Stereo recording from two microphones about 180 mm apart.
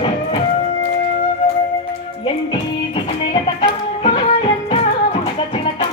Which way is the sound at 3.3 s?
30° left (ahead or behind).